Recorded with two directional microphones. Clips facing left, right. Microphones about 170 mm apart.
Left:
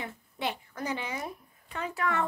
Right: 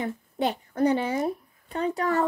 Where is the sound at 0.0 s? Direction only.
40° right (ahead or behind).